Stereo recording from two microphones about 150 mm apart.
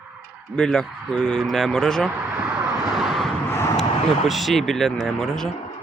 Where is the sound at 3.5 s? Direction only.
20° left (ahead or behind).